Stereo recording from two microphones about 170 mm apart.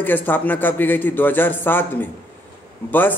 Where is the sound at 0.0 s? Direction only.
10° left (ahead or behind).